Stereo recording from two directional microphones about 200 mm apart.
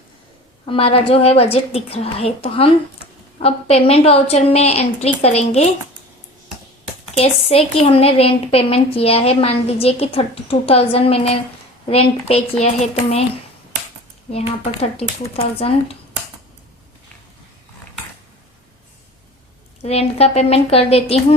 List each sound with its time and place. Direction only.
0.6 s a woman's voice: 25° left (ahead or behind)
7.1 s a woman's voice: 30° left (ahead or behind)
14.3 s a woman's voice: 30° left (ahead or behind)
19.8 s a woman's voice: 30° left (ahead or behind)